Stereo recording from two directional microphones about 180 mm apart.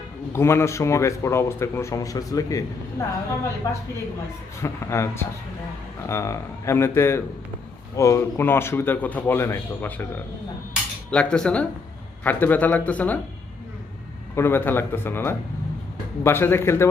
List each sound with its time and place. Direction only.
0.3 s a man's voice: 15° left (ahead or behind)
4.6 s a man's voice: 15° left (ahead or behind)
11.1 s a man's voice: 5° left (ahead or behind)
14.3 s a man's voice: 15° left (ahead or behind)